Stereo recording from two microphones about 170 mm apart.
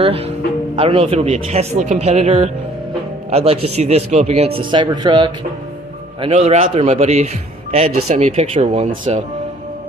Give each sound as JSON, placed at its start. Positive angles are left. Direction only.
{"t": 0.0, "sound": "speech", "side_deg": -35}
{"t": 6.2, "sound": "speech", "side_deg": -40}